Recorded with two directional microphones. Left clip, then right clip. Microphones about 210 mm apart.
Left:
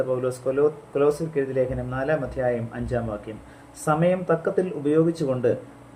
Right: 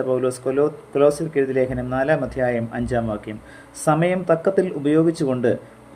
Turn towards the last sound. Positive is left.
turn(degrees=-40)  # may be behind; listen again after turning